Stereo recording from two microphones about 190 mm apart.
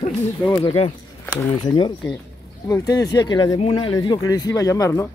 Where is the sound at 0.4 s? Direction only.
20° left (ahead or behind).